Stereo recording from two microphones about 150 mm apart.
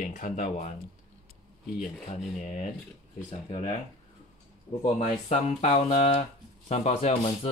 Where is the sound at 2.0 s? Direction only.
50° left (ahead or behind).